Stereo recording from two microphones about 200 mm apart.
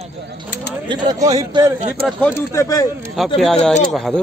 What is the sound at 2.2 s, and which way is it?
Speech, 10° left (ahead or behind).